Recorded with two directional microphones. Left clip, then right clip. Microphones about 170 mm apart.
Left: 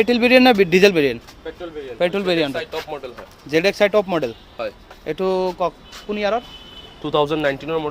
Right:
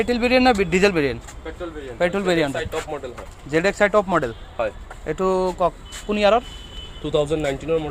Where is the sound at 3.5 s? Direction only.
25° left (ahead or behind).